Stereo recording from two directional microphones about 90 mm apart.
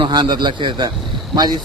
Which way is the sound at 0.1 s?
55° right (ahead or behind).